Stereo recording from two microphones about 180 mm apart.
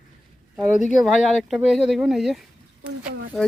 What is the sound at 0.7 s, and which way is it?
Speech, 45° left (ahead or behind).